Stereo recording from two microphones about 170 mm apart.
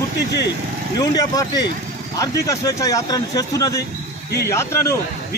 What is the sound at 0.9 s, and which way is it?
A man's voice, 25° left (ahead or behind).